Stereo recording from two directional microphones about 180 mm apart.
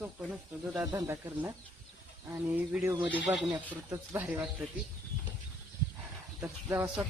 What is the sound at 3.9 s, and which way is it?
Speech, 15° right (ahead or behind).